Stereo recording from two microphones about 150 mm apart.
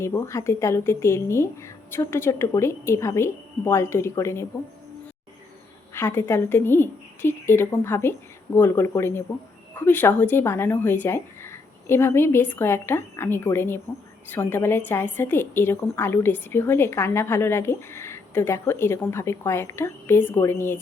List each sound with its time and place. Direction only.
0.0 s a woman's voice: 15° left (ahead or behind)
5.9 s a woman's voice: 15° left (ahead or behind)